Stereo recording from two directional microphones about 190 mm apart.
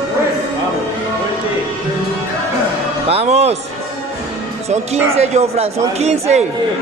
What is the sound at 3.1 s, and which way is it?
Speech, 35° right (ahead or behind).